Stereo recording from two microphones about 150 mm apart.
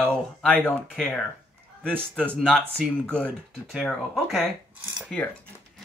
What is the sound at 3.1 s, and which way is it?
Speech, centre (ahead or behind).